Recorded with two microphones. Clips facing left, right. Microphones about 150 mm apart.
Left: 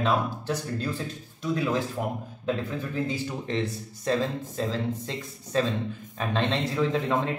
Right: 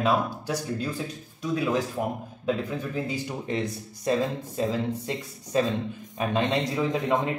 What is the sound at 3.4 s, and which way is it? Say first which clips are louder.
Speech: even; 15° right (ahead or behind).